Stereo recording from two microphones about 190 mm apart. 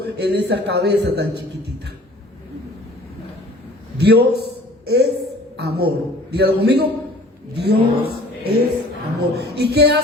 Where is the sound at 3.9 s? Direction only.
60° right (ahead or behind).